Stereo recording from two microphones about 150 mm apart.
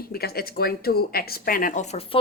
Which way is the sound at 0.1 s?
90° left.